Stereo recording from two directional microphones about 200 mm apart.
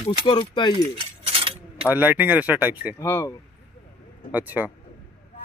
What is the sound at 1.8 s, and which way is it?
Speech, 10° right (ahead or behind).